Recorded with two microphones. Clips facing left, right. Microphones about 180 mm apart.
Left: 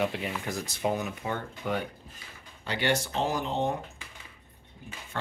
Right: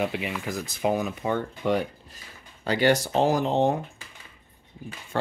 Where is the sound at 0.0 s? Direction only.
5° right (ahead or behind).